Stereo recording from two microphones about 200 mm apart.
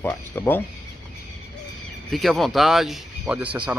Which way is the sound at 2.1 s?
Centre (ahead or behind).